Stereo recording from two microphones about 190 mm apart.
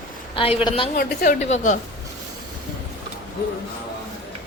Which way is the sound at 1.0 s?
40° left (ahead or behind).